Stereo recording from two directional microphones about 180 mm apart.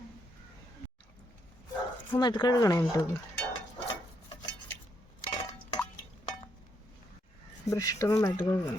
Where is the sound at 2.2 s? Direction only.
25° left (ahead or behind).